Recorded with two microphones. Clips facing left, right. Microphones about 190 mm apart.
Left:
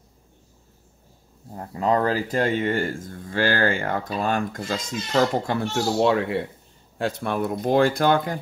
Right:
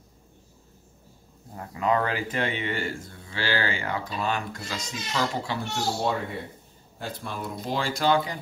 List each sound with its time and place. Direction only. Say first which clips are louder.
1.6 s speech: left 3 dB; 35° left (ahead or behind); by 5.6 s 50° left (ahead or behind)
5.9 s speech: left 8 dB; 85° left
7.0 s speech: left 10 dB; 75° left (ahead or behind); by 8.4 s 55° left (ahead or behind)